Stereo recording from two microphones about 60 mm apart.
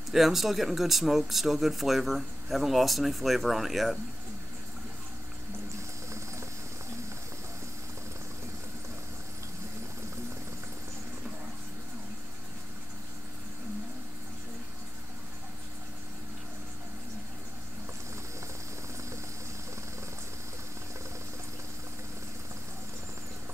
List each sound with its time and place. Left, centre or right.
0.1 s speech: centre
6.0 s vehicle: right